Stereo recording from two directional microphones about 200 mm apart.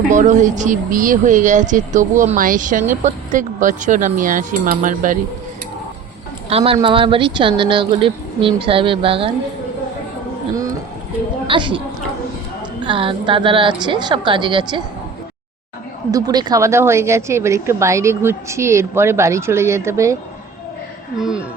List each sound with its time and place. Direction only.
0.1 s speech: 40° right (ahead or behind)
6.5 s speech: 30° right (ahead or behind)
11.4 s speech: 25° right (ahead or behind)
12.8 s speech: 25° right (ahead or behind)
16.1 s a woman's voice: 20° right (ahead or behind)
21.2 s speech: 5° right (ahead or behind)